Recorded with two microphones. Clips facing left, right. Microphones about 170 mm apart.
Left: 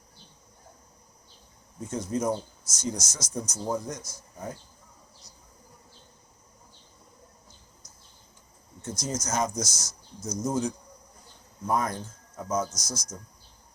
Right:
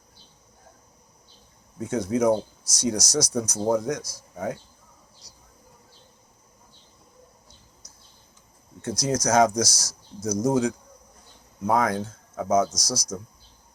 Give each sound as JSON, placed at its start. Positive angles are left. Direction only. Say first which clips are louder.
{"t": 1.8, "sound": "speech", "louder": "right 6 dB", "side_deg": -70}
{"t": 8.8, "sound": "speech", "louder": "right 7 dB", "side_deg": -70}
{"t": 9.6, "sound": "speech", "louder": "right 3 dB", "side_deg": -35}
{"t": 10.3, "sound": "speech", "louder": "right 6 dB", "side_deg": -75}